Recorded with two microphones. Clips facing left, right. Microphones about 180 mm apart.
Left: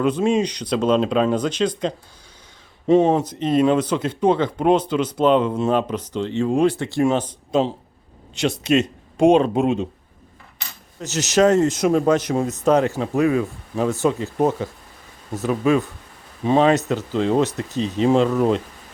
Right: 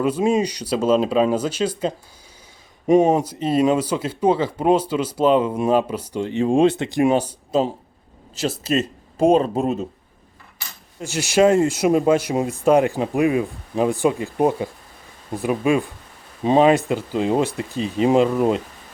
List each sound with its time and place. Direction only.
0.0 s speech: 10° right (ahead or behind)
11.0 s speech: 10° right (ahead or behind)